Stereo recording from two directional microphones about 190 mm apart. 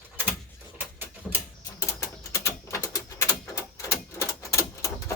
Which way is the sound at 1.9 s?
15° left (ahead or behind).